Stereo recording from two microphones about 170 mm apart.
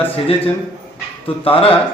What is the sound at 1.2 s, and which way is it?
Speech, 35° left (ahead or behind).